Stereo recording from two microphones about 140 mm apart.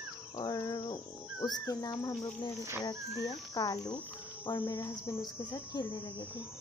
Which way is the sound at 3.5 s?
25° left (ahead or behind).